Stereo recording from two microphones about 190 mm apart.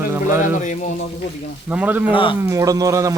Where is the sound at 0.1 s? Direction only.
15° right (ahead or behind).